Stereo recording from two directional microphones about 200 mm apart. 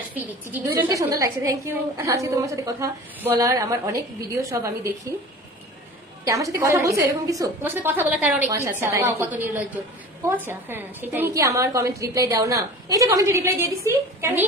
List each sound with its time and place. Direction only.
0.1 s a woman's voice: 10° right (ahead or behind)
6.2 s a woman's voice: 15° right (ahead or behind)